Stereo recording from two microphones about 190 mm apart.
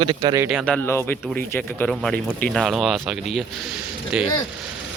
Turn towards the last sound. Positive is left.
turn(degrees=-5)  # may be behind; listen again after turning